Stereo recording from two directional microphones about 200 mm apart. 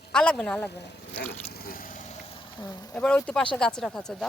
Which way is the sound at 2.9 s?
5° left (ahead or behind).